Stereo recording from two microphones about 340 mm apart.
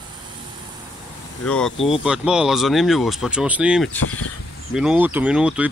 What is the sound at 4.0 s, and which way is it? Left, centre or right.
Speech, left.